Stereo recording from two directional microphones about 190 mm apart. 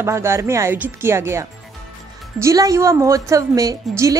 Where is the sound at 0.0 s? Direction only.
15° right (ahead or behind).